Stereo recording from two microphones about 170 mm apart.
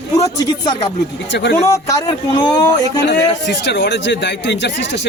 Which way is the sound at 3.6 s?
90° left.